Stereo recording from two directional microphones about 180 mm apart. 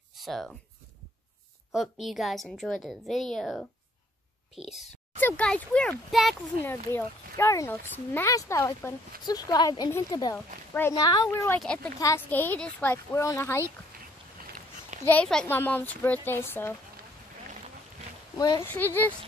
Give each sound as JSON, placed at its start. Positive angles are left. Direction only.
{"t": 0.1, "sound": "speech", "side_deg": 0}
{"t": 1.7, "sound": "a woman's voice", "side_deg": 0}
{"t": 5.2, "sound": "speech", "side_deg": 5}
{"t": 11.0, "sound": "speech", "side_deg": 25}
{"t": 11.3, "sound": "speech", "side_deg": 10}
{"t": 15.0, "sound": "speech", "side_deg": 5}
{"t": 18.4, "sound": "speech", "side_deg": 20}
{"t": 18.7, "sound": "speech", "side_deg": 10}